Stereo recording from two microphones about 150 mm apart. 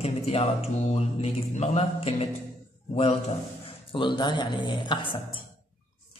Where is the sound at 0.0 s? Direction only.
40° left (ahead or behind).